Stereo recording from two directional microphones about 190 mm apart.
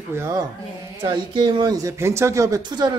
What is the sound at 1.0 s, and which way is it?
Speech, 25° right (ahead or behind).